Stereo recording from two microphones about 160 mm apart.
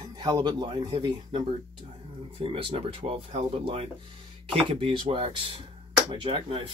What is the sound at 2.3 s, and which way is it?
Speech, 35° right (ahead or behind).